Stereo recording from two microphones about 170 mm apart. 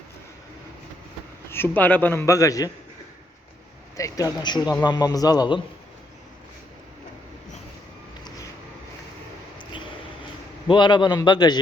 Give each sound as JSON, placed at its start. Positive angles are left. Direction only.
{"t": 1.5, "sound": "a man's voice", "side_deg": 10}
{"t": 3.9, "sound": "a man's voice", "side_deg": 20}
{"t": 10.7, "sound": "a man's voice", "side_deg": 30}